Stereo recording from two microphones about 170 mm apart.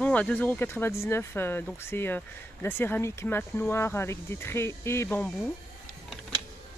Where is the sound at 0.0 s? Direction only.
10° left (ahead or behind).